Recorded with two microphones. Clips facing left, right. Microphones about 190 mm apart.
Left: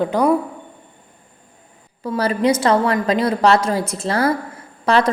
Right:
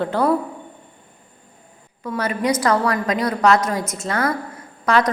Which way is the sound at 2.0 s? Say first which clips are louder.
Left 4 dB; 30° left (ahead or behind).